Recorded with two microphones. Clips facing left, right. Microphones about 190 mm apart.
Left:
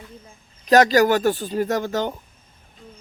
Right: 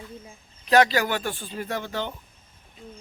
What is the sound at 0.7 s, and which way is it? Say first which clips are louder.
Speech: left 5 dB; 40° left (ahead or behind).